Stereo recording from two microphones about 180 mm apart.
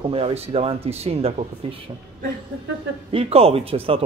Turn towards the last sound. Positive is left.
turn(degrees=-30)  # may be behind; listen again after turning